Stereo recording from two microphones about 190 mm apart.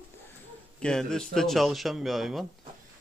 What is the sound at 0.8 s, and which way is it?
A man's voice, 5° left (ahead or behind).